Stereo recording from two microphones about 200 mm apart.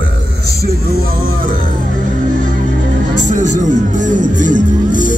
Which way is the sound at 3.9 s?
40° right (ahead or behind).